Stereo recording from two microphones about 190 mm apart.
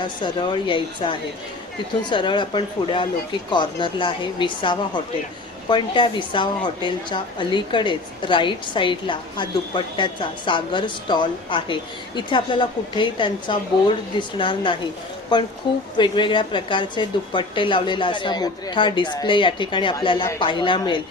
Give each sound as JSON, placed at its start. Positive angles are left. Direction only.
{"t": 0.0, "sound": "a woman's voice", "side_deg": 25}